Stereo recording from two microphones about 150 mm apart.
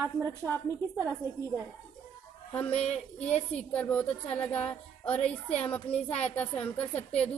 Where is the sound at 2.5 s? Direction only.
5° left (ahead or behind).